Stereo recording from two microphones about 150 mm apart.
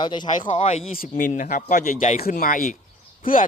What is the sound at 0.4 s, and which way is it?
Speech, 45° left (ahead or behind).